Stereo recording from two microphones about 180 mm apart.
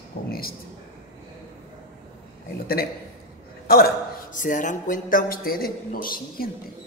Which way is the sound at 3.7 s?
60° left (ahead or behind).